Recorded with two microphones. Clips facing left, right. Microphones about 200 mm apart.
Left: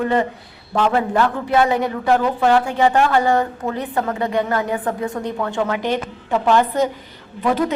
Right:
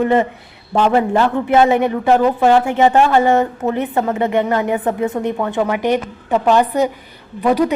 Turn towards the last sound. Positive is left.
turn(degrees=-15)  # may be behind; listen again after turning